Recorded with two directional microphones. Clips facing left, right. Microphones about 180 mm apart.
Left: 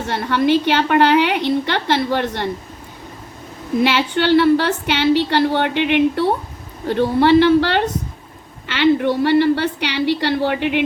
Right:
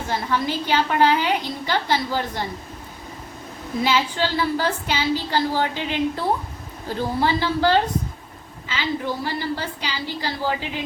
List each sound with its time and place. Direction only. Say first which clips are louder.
0.1 s a woman's voice: left 8 dB; 70° left (ahead or behind)
3.8 s a woman's voice: left 5 dB; 70° left (ahead or behind)